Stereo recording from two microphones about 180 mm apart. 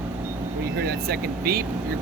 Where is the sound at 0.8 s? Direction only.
55° right (ahead or behind).